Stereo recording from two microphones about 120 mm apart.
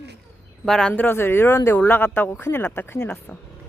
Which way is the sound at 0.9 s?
20° left (ahead or behind).